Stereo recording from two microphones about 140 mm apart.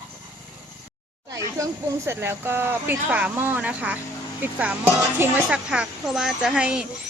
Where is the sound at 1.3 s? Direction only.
25° right (ahead or behind).